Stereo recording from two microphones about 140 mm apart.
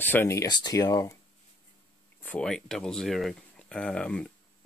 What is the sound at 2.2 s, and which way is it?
Speech, 5° left (ahead or behind).